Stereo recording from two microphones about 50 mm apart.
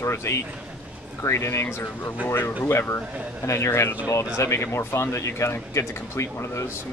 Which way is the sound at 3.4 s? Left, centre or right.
Left.